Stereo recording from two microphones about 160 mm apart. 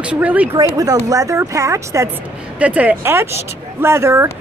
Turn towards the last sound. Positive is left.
turn(degrees=-15)  # may be behind; listen again after turning